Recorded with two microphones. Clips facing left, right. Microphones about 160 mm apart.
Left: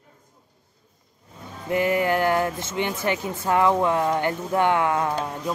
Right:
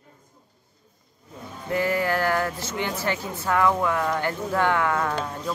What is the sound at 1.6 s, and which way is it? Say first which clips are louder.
Speech: left 2 dB; 20° left (ahead or behind).